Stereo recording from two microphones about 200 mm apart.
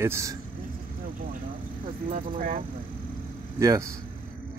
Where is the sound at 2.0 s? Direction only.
40° right (ahead or behind).